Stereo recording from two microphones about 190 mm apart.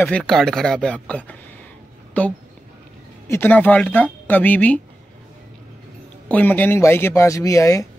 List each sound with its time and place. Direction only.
0.2 s a man's voice: centre (ahead or behind)
6.2 s a man's voice: 10° left (ahead or behind)